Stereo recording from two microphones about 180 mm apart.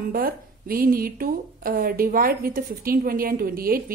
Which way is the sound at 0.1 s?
55° right (ahead or behind).